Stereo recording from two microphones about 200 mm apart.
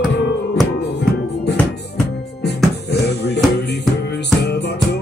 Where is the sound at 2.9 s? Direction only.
55° left (ahead or behind).